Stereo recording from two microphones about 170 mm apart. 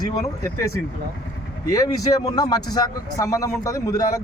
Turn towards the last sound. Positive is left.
turn(degrees=20)  # may be behind; listen again after turning